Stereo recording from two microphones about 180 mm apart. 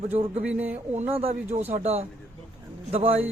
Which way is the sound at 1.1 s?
30° right (ahead or behind).